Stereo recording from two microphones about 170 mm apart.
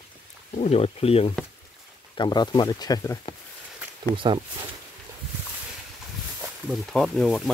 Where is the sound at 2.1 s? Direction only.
25° left (ahead or behind).